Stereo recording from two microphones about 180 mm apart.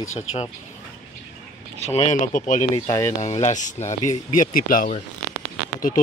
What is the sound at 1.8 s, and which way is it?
Speech, 40° left (ahead or behind).